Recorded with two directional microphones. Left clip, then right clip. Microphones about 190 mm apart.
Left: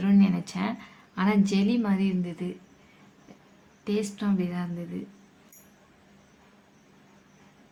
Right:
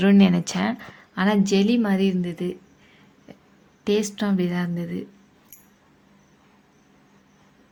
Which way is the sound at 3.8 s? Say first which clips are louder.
Right 7 dB; 35° right (ahead or behind).